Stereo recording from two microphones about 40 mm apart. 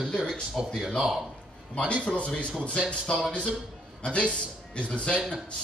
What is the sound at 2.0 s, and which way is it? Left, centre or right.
Speech, left.